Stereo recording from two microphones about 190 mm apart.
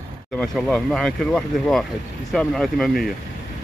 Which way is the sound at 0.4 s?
Centre (ahead or behind).